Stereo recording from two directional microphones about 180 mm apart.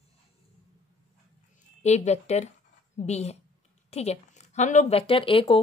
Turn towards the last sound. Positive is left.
turn(degrees=30)  # may be behind; listen again after turning